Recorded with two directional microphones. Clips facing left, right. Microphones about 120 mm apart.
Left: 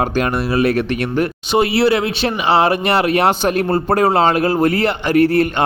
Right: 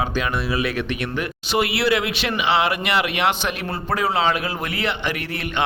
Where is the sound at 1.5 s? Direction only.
30° left (ahead or behind).